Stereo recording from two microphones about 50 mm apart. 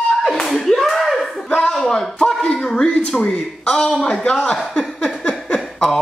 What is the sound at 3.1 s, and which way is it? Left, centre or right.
Speech, left.